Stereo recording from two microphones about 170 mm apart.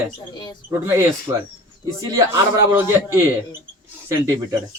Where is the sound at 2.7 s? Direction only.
15° right (ahead or behind).